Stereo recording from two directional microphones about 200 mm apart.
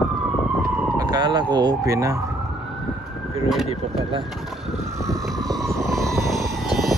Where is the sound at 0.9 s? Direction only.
20° right (ahead or behind).